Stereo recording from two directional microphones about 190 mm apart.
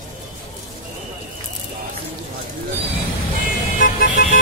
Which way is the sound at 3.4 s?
45° left (ahead or behind).